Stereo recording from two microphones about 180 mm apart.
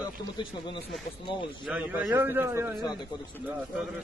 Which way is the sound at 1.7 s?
5° right (ahead or behind).